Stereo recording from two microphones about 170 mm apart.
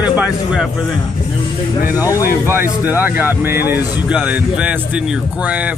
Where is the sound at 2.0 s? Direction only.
20° left (ahead or behind).